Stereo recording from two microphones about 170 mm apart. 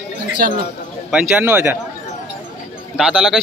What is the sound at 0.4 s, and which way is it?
Speech, 60° right (ahead or behind).